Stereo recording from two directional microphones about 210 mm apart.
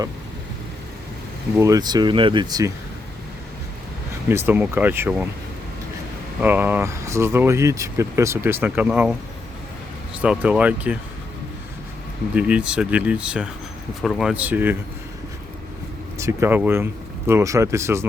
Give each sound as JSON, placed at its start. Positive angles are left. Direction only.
{"t": 1.5, "sound": "speech", "side_deg": -15}
{"t": 4.3, "sound": "speech", "side_deg": -10}
{"t": 6.4, "sound": "speech", "side_deg": -10}
{"t": 10.2, "sound": "speech", "side_deg": -5}
{"t": 12.3, "sound": "speech", "side_deg": -5}
{"t": 16.1, "sound": "speech", "side_deg": -15}